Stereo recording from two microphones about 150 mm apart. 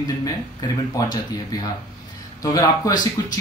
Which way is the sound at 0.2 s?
25° left (ahead or behind).